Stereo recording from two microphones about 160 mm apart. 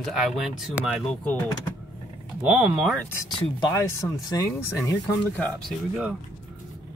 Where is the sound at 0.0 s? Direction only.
Centre (ahead or behind).